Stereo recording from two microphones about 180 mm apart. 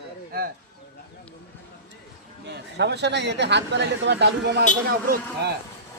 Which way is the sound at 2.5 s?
70° right (ahead or behind).